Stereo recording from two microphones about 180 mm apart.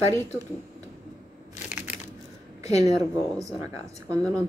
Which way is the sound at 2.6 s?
35° left (ahead or behind).